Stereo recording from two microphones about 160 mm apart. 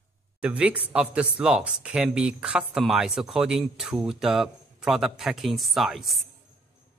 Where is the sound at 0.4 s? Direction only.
10° right (ahead or behind).